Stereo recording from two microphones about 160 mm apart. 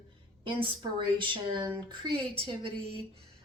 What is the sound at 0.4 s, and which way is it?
Speech, 30° right (ahead or behind).